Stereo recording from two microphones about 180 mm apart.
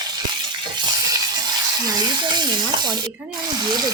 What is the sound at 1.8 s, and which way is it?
Stir, 20° right (ahead or behind).